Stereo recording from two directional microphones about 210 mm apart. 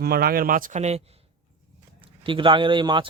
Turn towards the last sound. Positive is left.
turn(degrees=-25)  # may be behind; listen again after turning